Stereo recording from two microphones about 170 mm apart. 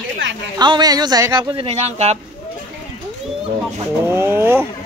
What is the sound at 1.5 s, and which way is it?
Speech, 35° right (ahead or behind).